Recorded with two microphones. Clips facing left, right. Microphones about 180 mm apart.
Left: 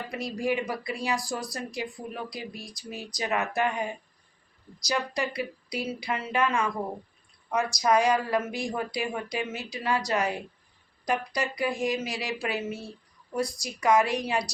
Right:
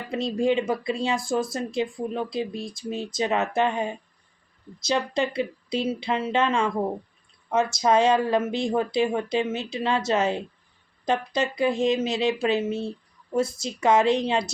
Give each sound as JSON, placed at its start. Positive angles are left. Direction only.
{"t": 0.1, "sound": "speech", "side_deg": -25}